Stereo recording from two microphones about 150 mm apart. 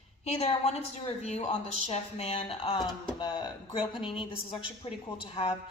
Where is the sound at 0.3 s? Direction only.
45° left (ahead or behind).